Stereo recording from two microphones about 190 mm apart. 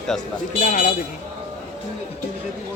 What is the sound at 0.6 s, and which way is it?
Speech, 40° left (ahead or behind).